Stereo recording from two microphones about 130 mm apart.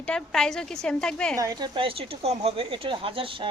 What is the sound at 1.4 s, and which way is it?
Speech, 30° right (ahead or behind).